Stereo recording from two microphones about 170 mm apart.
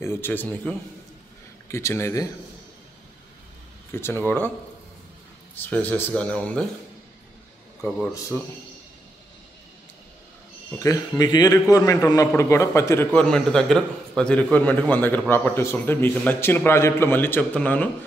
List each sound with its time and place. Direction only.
0.0 s a man's voice: 15° left (ahead or behind)
3.9 s a man's voice: 15° left (ahead or behind)
5.6 s a man's voice: 10° left (ahead or behind)
10.8 s a man's voice: 20° left (ahead or behind)